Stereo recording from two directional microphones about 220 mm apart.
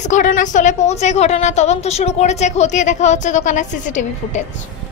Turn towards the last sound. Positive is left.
turn(degrees=35)  # may be behind; listen again after turning